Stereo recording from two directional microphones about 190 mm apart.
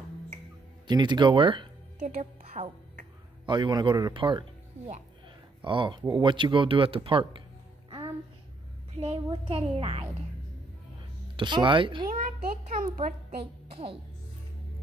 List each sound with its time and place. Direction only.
0.8 s speech: 25° right (ahead or behind)
2.0 s a woman's voice: 35° right (ahead or behind)
8.9 s speech: 35° right (ahead or behind)
11.3 s speech: 25° right (ahead or behind)
12.4 s a child's voice: 45° right (ahead or behind)
13.7 s music: 30° right (ahead or behind)